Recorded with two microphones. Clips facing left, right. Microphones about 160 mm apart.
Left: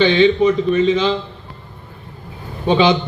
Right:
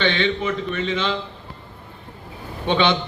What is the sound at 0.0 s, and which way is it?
A man's voice, 30° left (ahead or behind).